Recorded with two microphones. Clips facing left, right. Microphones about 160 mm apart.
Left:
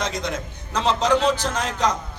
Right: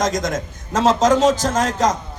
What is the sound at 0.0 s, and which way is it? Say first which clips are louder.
A man's voice: right 6 dB; 45° right (ahead or behind).